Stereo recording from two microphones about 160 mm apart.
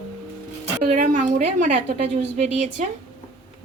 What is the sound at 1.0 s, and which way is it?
Speech, 55° right (ahead or behind).